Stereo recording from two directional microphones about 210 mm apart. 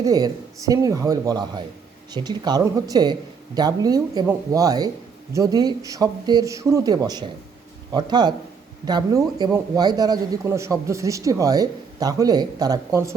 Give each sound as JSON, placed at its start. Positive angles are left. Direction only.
{"t": 0.0, "sound": "a man's voice", "side_deg": -15}